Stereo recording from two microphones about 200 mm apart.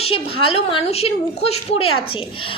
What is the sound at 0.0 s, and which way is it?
A woman's voice, 30° left (ahead or behind).